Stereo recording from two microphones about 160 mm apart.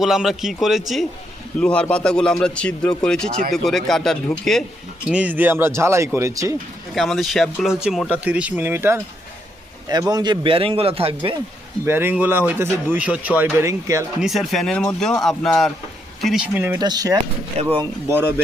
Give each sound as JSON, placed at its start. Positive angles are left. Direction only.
{"t": 0.0, "sound": "a man's voice", "side_deg": 0}
{"t": 5.0, "sound": "speech", "side_deg": -10}
{"t": 6.9, "sound": "speech", "side_deg": 0}
{"t": 10.0, "sound": "speech", "side_deg": -25}
{"t": 11.9, "sound": "speech", "side_deg": -15}
{"t": 14.2, "sound": "speech", "side_deg": 0}
{"t": 16.7, "sound": "speech", "side_deg": -25}
{"t": 17.6, "sound": "speech", "side_deg": -35}